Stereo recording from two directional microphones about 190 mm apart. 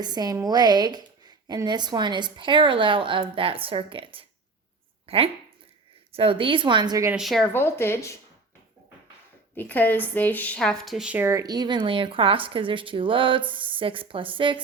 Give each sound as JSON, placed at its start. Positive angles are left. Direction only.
{"t": 0.0, "sound": "a woman's voice", "side_deg": -20}
{"t": 7.2, "sound": "speech", "side_deg": 0}
{"t": 7.5, "sound": "speech", "side_deg": 10}
{"t": 9.6, "sound": "a woman's voice", "side_deg": 10}